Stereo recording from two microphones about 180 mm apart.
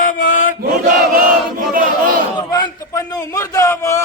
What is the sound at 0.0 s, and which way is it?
Chant, 50° left (ahead or behind).